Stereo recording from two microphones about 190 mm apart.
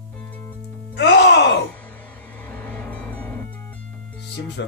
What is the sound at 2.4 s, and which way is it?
Music, 10° left (ahead or behind).